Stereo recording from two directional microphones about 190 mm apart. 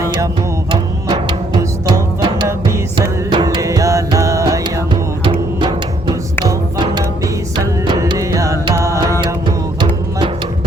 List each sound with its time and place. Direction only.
0.0 s music: 15° right (ahead or behind)